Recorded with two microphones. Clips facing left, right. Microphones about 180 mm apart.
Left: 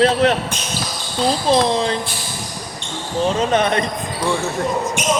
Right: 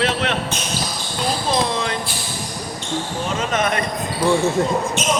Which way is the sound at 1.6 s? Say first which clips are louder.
Left 5 dB; 30° left (ahead or behind).